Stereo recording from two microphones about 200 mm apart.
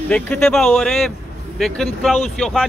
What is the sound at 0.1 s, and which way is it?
Speech, 5° left (ahead or behind).